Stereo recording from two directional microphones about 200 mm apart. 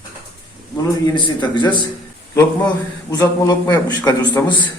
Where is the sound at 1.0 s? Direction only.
20° left (ahead or behind).